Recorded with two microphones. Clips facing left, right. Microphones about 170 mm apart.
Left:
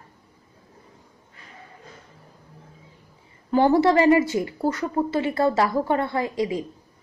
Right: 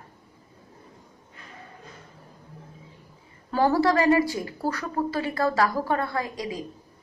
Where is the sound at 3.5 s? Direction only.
20° left (ahead or behind).